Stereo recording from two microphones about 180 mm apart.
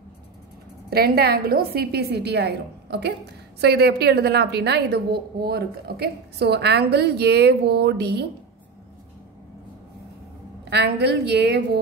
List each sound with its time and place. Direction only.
0.8 s a woman's voice: 60° right (ahead or behind)
10.7 s a woman's voice: 70° right (ahead or behind)